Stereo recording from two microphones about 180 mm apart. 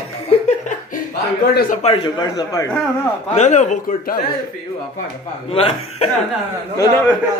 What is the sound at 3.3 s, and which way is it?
Speech, 40° left (ahead or behind).